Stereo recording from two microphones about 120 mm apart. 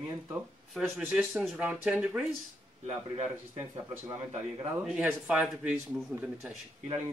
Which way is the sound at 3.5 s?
20° right (ahead or behind).